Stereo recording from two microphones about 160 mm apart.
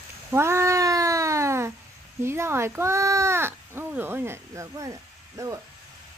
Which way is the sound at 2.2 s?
15° right (ahead or behind).